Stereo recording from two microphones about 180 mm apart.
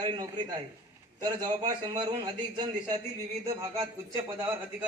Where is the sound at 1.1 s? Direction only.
20° right (ahead or behind).